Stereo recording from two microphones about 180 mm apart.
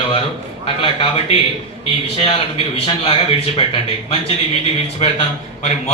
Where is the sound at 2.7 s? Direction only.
30° left (ahead or behind).